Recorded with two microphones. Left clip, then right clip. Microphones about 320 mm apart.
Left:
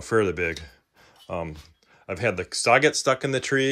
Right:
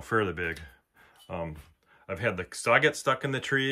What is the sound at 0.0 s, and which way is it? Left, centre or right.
Speech, centre.